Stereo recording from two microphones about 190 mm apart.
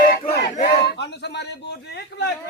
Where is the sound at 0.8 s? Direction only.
65° left (ahead or behind).